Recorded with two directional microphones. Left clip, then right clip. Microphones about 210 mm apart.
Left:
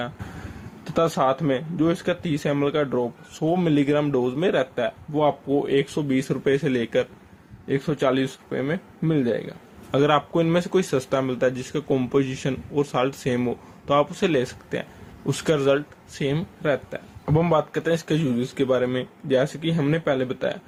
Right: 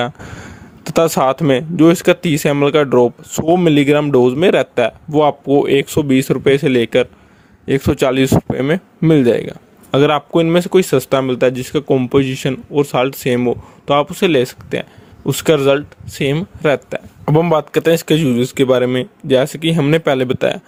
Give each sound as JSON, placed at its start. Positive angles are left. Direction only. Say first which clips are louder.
{"t": 0.9, "sound": "speech", "louder": "right 8 dB", "side_deg": -50}